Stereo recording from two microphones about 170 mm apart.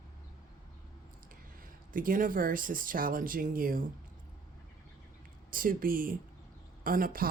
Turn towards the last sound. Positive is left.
turn(degrees=-55)  # may be behind; listen again after turning